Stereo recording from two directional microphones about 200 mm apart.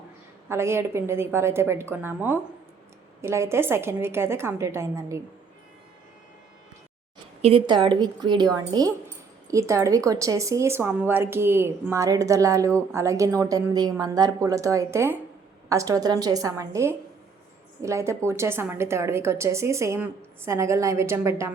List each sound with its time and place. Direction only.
0.4 s a woman's voice: 15° right (ahead or behind)
7.4 s a woman's voice: 25° right (ahead or behind)